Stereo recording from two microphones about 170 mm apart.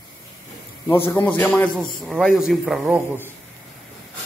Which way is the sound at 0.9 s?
15° left (ahead or behind).